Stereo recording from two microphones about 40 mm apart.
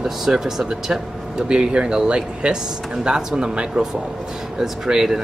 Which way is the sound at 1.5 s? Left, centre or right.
Right.